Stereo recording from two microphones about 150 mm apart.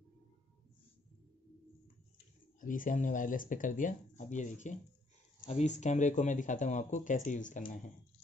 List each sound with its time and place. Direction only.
2.6 s speech: 65° left (ahead or behind)